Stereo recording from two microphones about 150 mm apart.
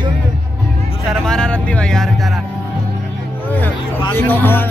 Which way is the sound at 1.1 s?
5° left (ahead or behind).